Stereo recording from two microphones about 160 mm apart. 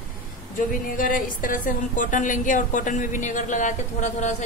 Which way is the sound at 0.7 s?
55° left (ahead or behind).